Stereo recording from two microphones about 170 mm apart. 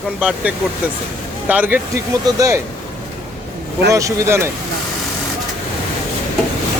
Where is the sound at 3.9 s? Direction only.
20° right (ahead or behind).